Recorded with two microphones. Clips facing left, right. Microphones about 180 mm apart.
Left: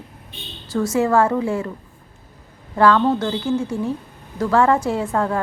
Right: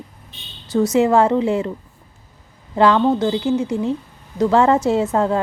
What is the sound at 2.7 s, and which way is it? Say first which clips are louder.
A woman's voice: right 1 dB; 20° right (ahead or behind).